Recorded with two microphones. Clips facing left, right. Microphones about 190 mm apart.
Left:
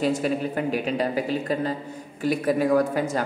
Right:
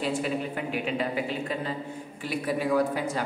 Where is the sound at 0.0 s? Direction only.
45° left (ahead or behind).